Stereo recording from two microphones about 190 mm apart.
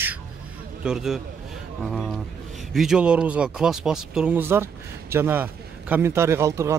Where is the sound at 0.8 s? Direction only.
Centre (ahead or behind).